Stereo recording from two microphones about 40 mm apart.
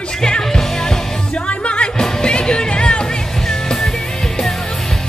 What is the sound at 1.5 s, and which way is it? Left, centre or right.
Music, left.